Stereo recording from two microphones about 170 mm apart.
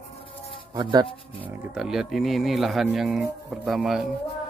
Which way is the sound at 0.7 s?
25° right (ahead or behind).